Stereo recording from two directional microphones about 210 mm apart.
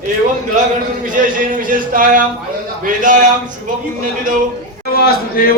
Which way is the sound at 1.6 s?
40° right (ahead or behind).